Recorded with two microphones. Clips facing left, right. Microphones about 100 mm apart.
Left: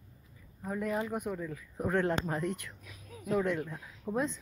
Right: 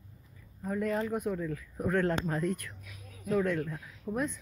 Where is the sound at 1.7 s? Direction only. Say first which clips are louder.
Right 1 dB; 20° left (ahead or behind).